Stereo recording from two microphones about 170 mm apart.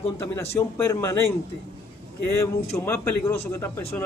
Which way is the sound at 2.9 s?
15° left (ahead or behind).